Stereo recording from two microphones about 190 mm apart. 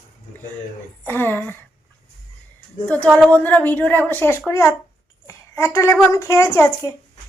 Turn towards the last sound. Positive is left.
turn(degrees=15)  # may be behind; listen again after turning